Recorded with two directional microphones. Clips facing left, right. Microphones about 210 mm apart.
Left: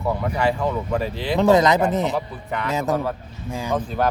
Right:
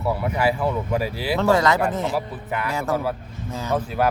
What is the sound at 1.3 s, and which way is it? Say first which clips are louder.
Speech: left 3 dB; 20° left (ahead or behind).